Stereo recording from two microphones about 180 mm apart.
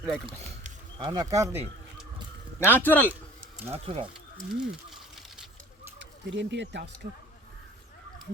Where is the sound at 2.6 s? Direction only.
10° left (ahead or behind).